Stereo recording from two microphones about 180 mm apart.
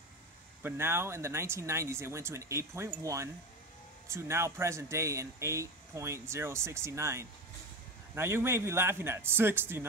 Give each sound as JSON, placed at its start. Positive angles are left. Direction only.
{"t": 0.6, "sound": "speech", "side_deg": -10}